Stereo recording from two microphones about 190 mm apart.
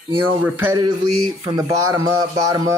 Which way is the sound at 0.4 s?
10° right (ahead or behind).